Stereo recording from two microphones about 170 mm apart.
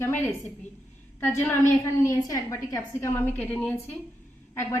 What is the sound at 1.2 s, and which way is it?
A woman's voice, 15° left (ahead or behind).